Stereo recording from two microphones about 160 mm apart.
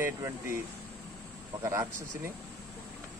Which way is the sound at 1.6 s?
20° right (ahead or behind).